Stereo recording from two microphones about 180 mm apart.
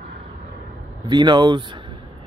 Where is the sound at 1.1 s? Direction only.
25° right (ahead or behind).